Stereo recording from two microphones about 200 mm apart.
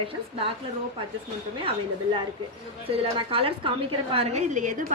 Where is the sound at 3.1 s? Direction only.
25° right (ahead or behind).